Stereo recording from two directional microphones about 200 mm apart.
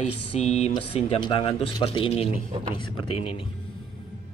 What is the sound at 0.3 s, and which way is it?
Speech, 35° left (ahead or behind).